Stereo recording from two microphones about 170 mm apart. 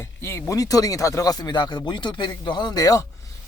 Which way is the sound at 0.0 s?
15° left (ahead or behind).